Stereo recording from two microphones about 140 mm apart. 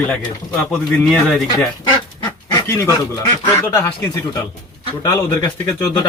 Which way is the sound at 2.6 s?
20° left (ahead or behind).